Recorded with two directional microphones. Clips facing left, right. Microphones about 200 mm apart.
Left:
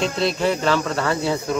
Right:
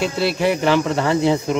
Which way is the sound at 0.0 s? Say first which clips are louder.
Right 2 dB; 10° right (ahead or behind).